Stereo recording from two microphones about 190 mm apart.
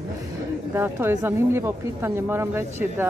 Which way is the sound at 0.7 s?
10° right (ahead or behind).